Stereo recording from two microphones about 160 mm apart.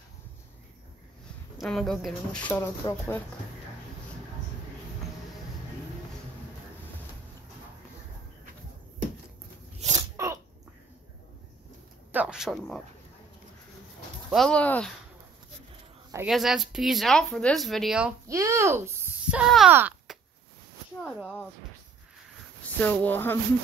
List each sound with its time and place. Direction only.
1.6 s speech: centre (ahead or behind)
2.8 s speech: 25° left (ahead or behind)
9.8 s a sound: 45° right (ahead or behind)
10.1 s sneeze: 20° right (ahead or behind)
12.1 s a sound: 5° right (ahead or behind)
14.3 s speech: 5° left (ahead or behind)
16.3 s speech: centre (ahead or behind)
18.3 s speech: 20° right (ahead or behind)
19.3 s speech: 5° right (ahead or behind)
20.1 s a sound: 5° right (ahead or behind)
21.0 s speech: 5° right (ahead or behind)
22.8 s speech: 10° left (ahead or behind)